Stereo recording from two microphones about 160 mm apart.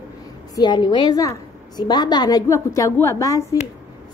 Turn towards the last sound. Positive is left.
turn(degrees=20)  # may be behind; listen again after turning